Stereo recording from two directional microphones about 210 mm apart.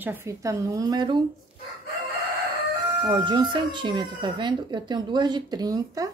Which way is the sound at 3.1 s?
20° right (ahead or behind).